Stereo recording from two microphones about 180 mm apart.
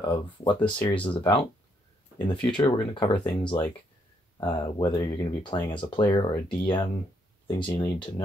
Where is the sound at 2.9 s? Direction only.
25° left (ahead or behind).